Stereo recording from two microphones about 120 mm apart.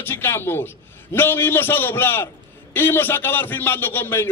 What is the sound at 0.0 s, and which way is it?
A man's voice, 20° left (ahead or behind).